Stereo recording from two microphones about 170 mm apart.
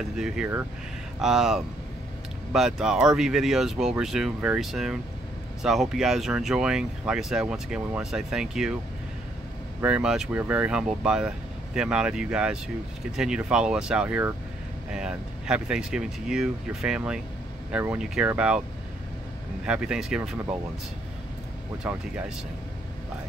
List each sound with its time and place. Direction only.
1.2 s speech: 5° right (ahead or behind)
9.8 s speech: 5° right (ahead or behind)
19.6 s speech: 5° right (ahead or behind)
21.8 s speech: 10° right (ahead or behind)